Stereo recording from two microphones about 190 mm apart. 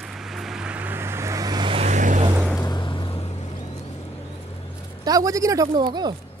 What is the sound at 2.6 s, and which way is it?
Vehicle, 25° left (ahead or behind).